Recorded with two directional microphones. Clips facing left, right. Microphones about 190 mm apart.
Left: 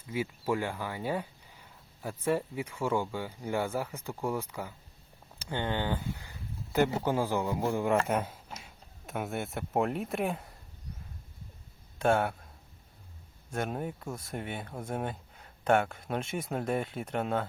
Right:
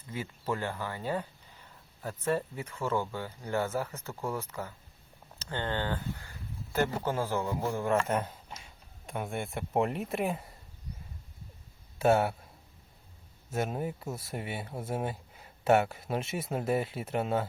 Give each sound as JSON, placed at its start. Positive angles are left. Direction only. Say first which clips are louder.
{"t": 0.0, "sound": "speech", "louder": "left 4 dB", "side_deg": 10}
{"t": 11.9, "sound": "speech", "louder": "right 2 dB", "side_deg": -5}
{"t": 13.5, "sound": "speech", "louder": "right 1 dB", "side_deg": -5}